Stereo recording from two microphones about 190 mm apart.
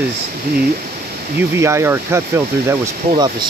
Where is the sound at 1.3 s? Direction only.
15° right (ahead or behind).